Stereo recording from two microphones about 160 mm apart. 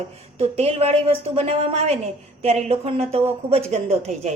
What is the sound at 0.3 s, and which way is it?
A woman's voice, 40° right (ahead or behind).